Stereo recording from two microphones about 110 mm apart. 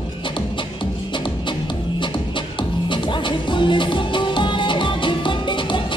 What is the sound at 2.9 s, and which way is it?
Music, 45° left (ahead or behind).